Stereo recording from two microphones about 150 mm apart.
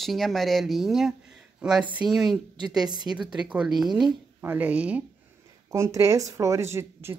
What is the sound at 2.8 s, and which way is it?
Speech, 30° right (ahead or behind).